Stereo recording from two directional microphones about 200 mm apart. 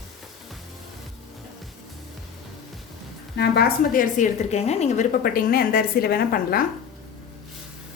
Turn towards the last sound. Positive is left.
turn(degrees=50)  # may be behind; listen again after turning